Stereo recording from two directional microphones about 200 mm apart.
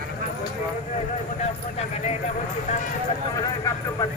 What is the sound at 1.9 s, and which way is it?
Clip-clop, 35° left (ahead or behind).